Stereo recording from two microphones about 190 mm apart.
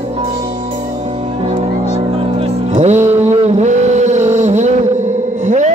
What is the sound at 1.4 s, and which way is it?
Music, 30° right (ahead or behind).